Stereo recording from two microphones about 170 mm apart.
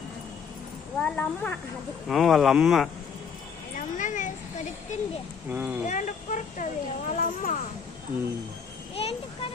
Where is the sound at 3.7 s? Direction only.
50° left (ahead or behind).